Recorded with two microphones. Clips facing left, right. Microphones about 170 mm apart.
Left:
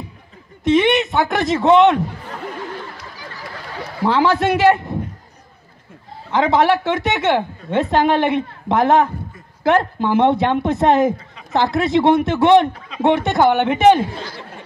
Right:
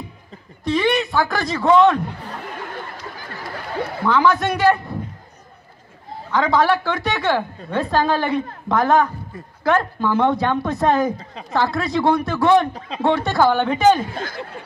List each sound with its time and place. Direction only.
0.7 s a woman's voice: 20° left (ahead or behind)
4.0 s a woman's voice: 30° left (ahead or behind)
6.3 s a woman's voice: 25° left (ahead or behind)
12.7 s speech: 30° right (ahead or behind)
13.0 s a woman's voice: 20° left (ahead or behind)
14.1 s speech: 50° right (ahead or behind)